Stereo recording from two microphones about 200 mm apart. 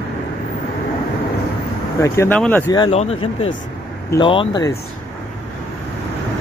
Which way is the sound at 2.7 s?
25° left (ahead or behind).